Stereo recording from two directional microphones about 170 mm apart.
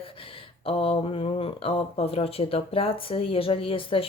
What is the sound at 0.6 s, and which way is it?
Speech, 35° left (ahead or behind).